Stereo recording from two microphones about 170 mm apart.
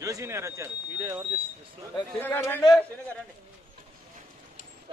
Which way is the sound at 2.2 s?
10° left (ahead or behind).